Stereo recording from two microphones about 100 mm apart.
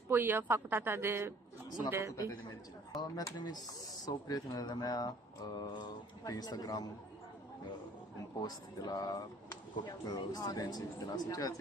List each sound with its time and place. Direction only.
0.1 s a woman's voice: 20° right (ahead or behind)
3.0 s speech: 40° left (ahead or behind)
8.4 s speech: 40° left (ahead or behind)